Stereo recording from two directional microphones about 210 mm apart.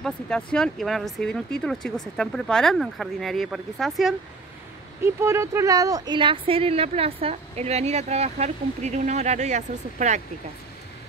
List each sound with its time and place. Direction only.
0.0 s speech: 5° left (ahead or behind)
5.0 s speech: 15° right (ahead or behind); by 10.2 s 35° right (ahead or behind)